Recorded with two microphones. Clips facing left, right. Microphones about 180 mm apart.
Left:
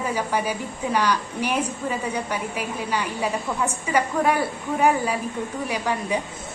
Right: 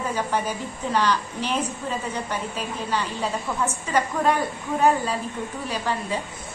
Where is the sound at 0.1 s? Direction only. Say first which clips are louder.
Left 1 dB; 10° left (ahead or behind).